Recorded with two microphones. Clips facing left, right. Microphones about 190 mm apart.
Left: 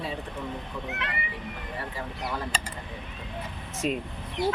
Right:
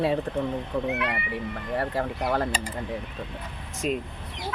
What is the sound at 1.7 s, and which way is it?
Speech, 65° right (ahead or behind).